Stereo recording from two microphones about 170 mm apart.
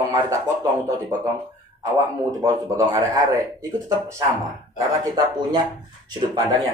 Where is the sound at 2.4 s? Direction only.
20° right (ahead or behind).